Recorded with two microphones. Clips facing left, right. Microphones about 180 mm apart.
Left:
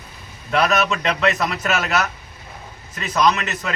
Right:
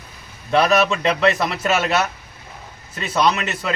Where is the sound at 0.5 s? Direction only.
30° right (ahead or behind).